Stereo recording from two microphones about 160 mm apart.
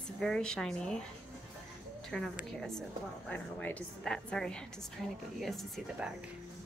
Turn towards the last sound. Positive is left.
turn(degrees=0)  # may be behind; listen again after turning